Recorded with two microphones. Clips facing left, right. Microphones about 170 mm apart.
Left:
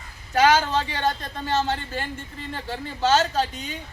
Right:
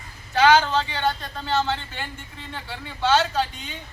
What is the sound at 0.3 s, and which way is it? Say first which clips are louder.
A man's voice: right 1 dB; 40° left (ahead or behind).